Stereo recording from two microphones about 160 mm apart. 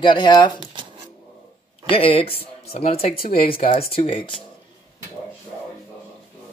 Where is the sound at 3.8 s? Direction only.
35° left (ahead or behind).